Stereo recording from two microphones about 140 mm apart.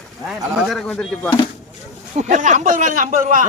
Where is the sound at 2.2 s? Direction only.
60° right (ahead or behind).